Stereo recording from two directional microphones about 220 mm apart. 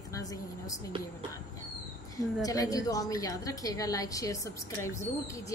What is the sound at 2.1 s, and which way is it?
A woman's voice, 15° left (ahead or behind).